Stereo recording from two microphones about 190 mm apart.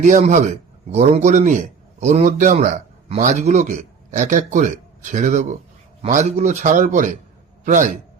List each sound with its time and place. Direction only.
0.0 s a man's voice: 40° right (ahead or behind)